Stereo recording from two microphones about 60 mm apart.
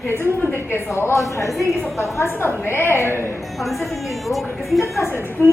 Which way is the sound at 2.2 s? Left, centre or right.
Left.